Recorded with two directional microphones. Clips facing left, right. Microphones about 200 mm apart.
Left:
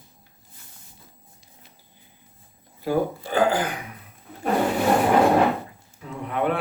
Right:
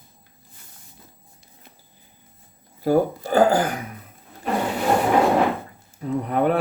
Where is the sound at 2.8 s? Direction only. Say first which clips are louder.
Right 4 dB; 45° right (ahead or behind).